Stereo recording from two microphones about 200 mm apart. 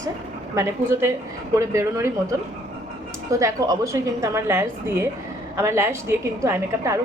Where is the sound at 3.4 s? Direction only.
15° right (ahead or behind).